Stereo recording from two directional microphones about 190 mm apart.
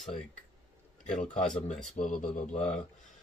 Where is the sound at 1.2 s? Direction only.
40° left (ahead or behind).